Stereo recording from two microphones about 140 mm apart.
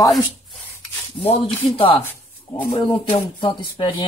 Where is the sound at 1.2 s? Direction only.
40° left (ahead or behind).